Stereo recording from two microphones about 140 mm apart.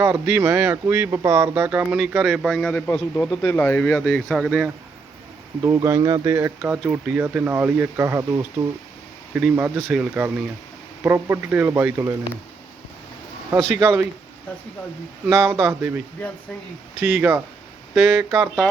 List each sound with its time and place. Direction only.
0.0 s speech: 15° right (ahead or behind)
1.9 s a man's voice: 5° right (ahead or behind); by 4.2 s 15° left (ahead or behind)
4.3 s a man's voice: centre (ahead or behind)
5.6 s speech: 20° right (ahead or behind)
6.6 s speech: 10° right (ahead or behind)
13.5 s speech: 15° right (ahead or behind)
15.3 s speech: 20° right (ahead or behind)
17.0 s a man's voice: 10° right (ahead or behind)